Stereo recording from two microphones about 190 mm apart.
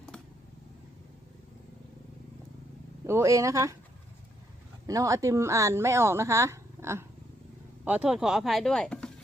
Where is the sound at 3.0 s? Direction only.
15° right (ahead or behind).